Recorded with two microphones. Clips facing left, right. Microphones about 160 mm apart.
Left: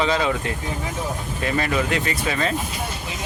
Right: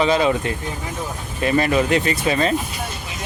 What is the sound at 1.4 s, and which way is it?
Speech, 20° right (ahead or behind).